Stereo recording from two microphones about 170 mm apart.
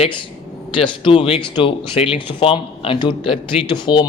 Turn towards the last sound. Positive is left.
turn(degrees=25)  # may be behind; listen again after turning